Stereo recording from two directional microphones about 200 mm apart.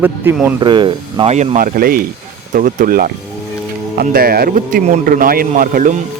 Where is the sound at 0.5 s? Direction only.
25° right (ahead or behind).